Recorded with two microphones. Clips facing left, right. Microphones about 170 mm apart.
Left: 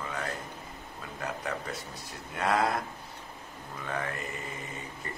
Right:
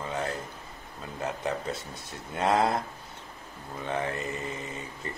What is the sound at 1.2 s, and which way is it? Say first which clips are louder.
Speech: right 4 dB; 25° right (ahead or behind).